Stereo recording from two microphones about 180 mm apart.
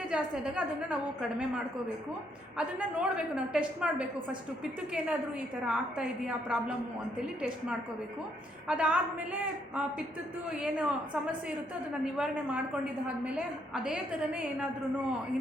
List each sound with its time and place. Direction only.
0.1 s a woman's voice: 5° right (ahead or behind)
2.6 s a woman's voice: 5° right (ahead or behind)
8.6 s a woman's voice: 5° right (ahead or behind)